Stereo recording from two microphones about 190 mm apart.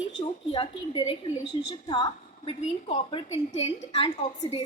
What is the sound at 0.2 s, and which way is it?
A woman's voice, 30° left (ahead or behind).